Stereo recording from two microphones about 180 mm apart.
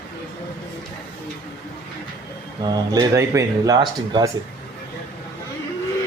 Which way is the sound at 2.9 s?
20° right (ahead or behind).